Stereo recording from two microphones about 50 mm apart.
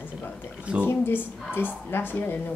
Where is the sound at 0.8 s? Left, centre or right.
Left.